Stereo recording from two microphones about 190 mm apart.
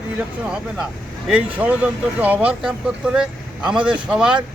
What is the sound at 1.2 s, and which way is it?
Speech, 5° right (ahead or behind).